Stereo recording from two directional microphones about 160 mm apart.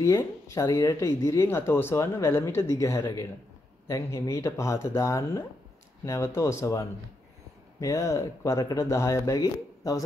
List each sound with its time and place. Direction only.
0.0 s speech: 20° left (ahead or behind)